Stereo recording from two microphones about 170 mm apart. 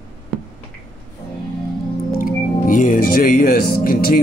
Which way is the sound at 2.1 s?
55° left (ahead or behind).